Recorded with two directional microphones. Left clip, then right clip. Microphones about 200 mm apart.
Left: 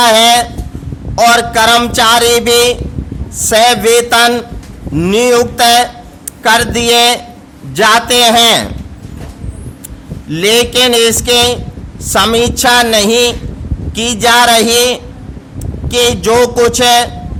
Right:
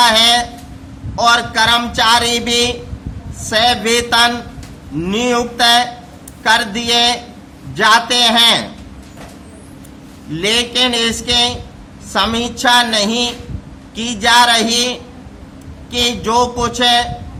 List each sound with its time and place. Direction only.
0.0 s a sound: 55° left (ahead or behind)
1.1 s speech: 55° left (ahead or behind)
10.3 s speech: 55° left (ahead or behind)